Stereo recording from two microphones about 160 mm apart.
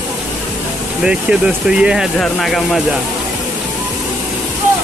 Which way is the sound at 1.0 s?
5° right (ahead or behind).